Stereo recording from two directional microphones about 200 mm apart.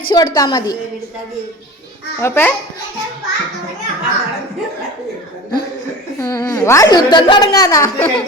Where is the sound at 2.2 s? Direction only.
10° left (ahead or behind).